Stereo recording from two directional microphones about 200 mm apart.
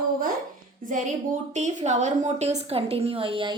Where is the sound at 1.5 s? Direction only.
35° right (ahead or behind).